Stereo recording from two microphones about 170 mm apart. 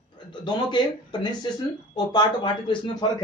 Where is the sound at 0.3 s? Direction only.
25° left (ahead or behind).